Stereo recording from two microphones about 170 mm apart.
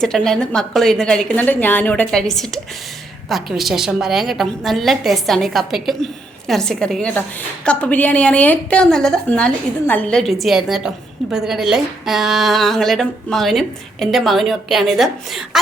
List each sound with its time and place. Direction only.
0.0 s a woman's voice: 5° left (ahead or behind)